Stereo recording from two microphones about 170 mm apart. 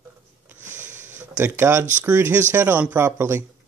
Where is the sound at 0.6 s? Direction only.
45° right (ahead or behind).